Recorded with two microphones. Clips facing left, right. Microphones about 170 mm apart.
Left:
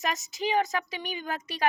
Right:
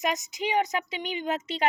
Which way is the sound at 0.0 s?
15° right (ahead or behind).